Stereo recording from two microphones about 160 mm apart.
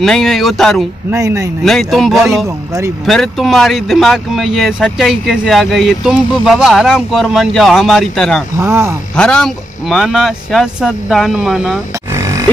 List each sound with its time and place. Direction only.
0.0 s speech: centre (ahead or behind)
1.1 s speech: 20° right (ahead or behind)
1.6 s speech: centre (ahead or behind)
2.4 s speech: 20° right (ahead or behind)
3.1 s speech: centre (ahead or behind)
8.5 s speech: 15° right (ahead or behind)
9.1 s speech: 5° left (ahead or behind)
12.1 s oink: 20° right (ahead or behind)